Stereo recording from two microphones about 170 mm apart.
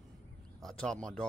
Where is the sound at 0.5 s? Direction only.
5° left (ahead or behind).